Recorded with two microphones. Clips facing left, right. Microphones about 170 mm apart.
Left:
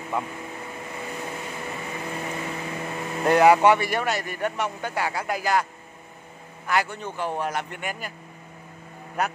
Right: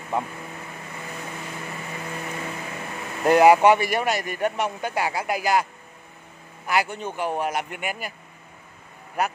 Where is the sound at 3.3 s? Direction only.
15° right (ahead or behind).